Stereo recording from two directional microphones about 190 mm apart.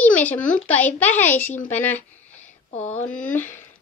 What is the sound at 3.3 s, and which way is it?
Speech, 40° left (ahead or behind).